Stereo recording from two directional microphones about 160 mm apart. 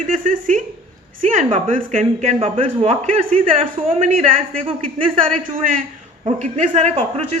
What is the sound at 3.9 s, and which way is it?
Speech, 55° right (ahead or behind).